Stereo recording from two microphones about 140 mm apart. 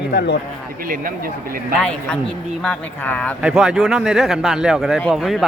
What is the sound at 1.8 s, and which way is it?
Speech, 5° left (ahead or behind).